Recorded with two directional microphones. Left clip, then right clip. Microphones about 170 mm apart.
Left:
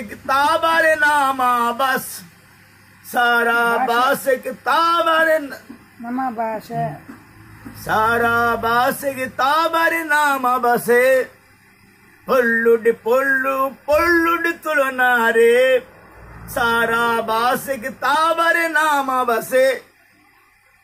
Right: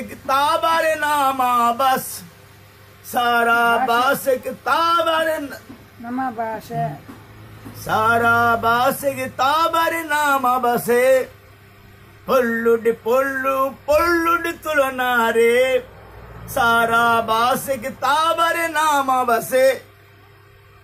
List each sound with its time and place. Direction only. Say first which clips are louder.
0.3 s speech: left 1 dB; centre (ahead or behind)
6.0 s speech: left 2 dB; 30° left (ahead or behind)
7.7 s speech: even; centre (ahead or behind)
12.3 s speech: left 2 dB; centre (ahead or behind)